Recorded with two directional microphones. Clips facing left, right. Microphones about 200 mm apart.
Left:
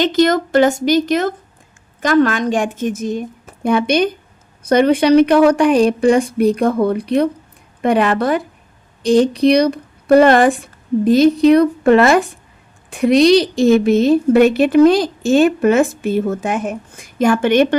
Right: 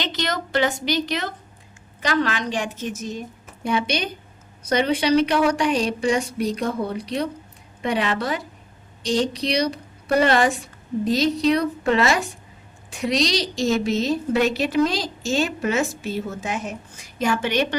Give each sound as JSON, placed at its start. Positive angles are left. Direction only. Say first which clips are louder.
{"t": 0.0, "sound": "a woman's voice", "louder": "left 13 dB", "side_deg": 50}